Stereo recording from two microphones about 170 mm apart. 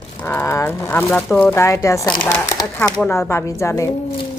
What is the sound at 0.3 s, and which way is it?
Speech, 15° left (ahead or behind).